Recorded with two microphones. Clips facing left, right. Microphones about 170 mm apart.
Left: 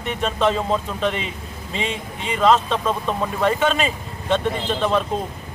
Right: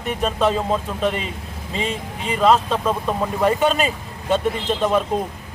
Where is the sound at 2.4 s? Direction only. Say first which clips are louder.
Even; 5° right (ahead or behind).